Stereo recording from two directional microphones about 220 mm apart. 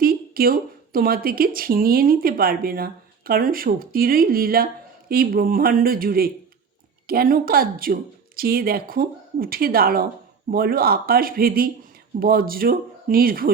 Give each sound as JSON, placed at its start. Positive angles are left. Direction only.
{"t": 0.0, "sound": "speech", "side_deg": -40}